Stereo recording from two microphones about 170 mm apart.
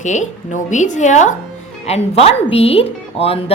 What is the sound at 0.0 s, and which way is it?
A woman's voice, 45° left (ahead or behind).